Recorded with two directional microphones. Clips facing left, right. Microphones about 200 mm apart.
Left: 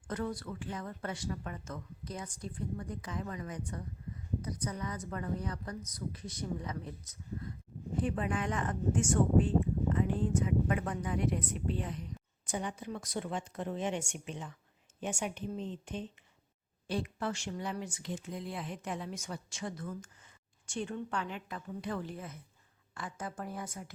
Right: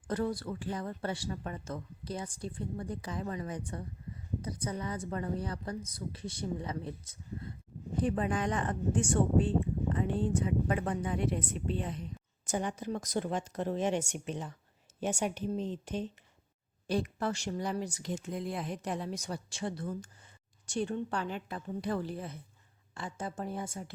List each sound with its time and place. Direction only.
0.1 s a woman's voice: 35° right (ahead or behind)
12.5 s a woman's voice: 45° right (ahead or behind); by 23.8 s 25° right (ahead or behind)